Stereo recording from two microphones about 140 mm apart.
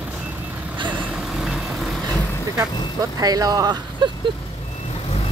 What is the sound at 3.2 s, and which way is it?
Speech, 25° right (ahead or behind).